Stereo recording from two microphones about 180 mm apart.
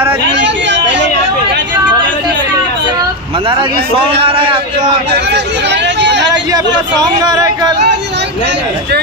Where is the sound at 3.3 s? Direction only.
30° right (ahead or behind).